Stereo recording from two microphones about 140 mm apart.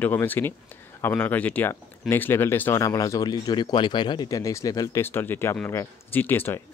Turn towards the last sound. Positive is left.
turn(degrees=15)  # may be behind; listen again after turning